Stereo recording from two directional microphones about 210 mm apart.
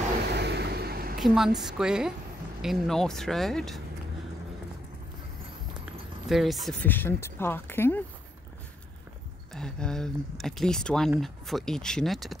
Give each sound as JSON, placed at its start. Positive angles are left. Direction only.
{"t": 0.2, "sound": "vehicle", "side_deg": -50}
{"t": 1.2, "sound": "speech", "side_deg": 0}
{"t": 6.2, "sound": "speech", "side_deg": 0}
{"t": 9.5, "sound": "speech", "side_deg": 5}